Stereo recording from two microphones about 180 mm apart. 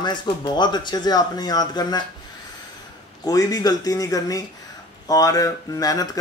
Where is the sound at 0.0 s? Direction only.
25° left (ahead or behind).